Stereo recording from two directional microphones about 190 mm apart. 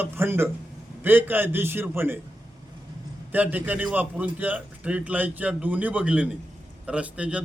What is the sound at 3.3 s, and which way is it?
A man's voice, 10° right (ahead or behind).